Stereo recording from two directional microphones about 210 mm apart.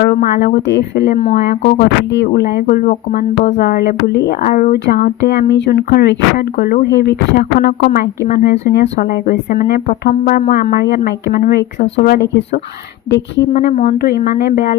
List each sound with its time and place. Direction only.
0.0 s speech: 45° left (ahead or behind)
2.1 s speech: 50° left (ahead or behind)
13.5 s speech: 40° left (ahead or behind)